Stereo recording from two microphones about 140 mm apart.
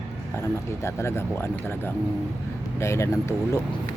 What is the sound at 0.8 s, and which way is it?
Speech, 20° left (ahead or behind).